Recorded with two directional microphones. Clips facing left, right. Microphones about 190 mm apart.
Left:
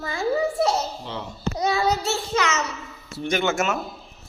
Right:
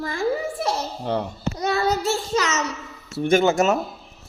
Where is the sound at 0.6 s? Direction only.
55° right (ahead or behind).